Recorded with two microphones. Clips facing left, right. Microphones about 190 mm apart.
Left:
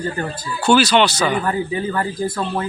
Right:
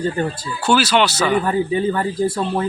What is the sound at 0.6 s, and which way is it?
Speech, 5° right (ahead or behind).